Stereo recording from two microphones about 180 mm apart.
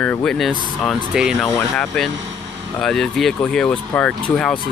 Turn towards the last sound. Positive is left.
turn(degrees=5)  # may be behind; listen again after turning